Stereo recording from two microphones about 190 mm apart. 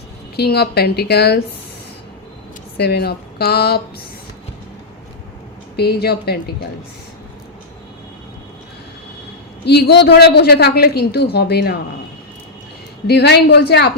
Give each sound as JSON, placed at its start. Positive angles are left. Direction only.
{"t": 0.3, "sound": "a woman's voice", "side_deg": 60}
{"t": 2.7, "sound": "a woman's voice", "side_deg": 60}
{"t": 5.7, "sound": "a woman's voice", "side_deg": 55}
{"t": 9.6, "sound": "a woman's voice", "side_deg": 60}
{"t": 13.1, "sound": "a woman's voice", "side_deg": 60}